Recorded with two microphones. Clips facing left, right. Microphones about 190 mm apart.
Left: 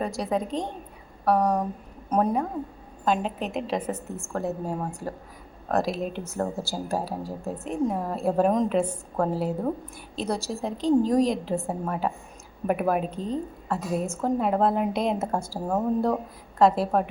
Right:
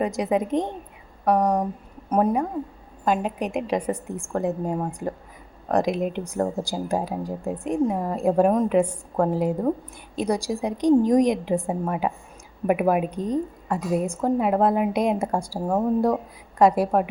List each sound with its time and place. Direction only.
0.0 s a woman's voice: 20° right (ahead or behind)